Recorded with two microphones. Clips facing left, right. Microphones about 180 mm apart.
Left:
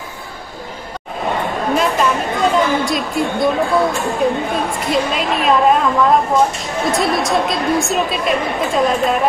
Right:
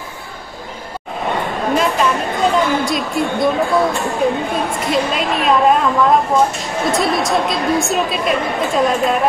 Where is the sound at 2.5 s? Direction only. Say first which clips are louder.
Even; centre (ahead or behind).